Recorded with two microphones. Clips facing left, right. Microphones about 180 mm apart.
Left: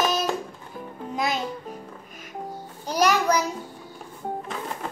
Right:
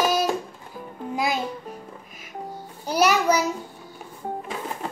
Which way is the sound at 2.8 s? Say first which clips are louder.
Right 1 dB; 10° right (ahead or behind).